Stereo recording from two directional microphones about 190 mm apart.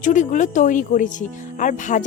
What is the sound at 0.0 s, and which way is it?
Speech, 40° left (ahead or behind).